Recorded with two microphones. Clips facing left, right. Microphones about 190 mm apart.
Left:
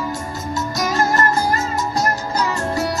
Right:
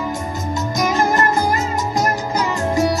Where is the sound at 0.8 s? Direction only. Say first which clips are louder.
Right 2 dB; 15° right (ahead or behind).